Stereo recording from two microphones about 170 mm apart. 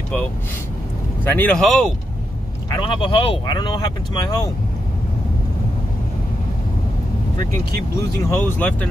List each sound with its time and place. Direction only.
1.2 s speech: 10° left (ahead or behind)
2.7 s speech: 30° left (ahead or behind)
8.3 s speech: 15° left (ahead or behind)